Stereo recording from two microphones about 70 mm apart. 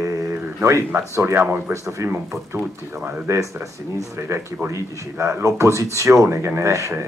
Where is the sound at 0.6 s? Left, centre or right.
Right.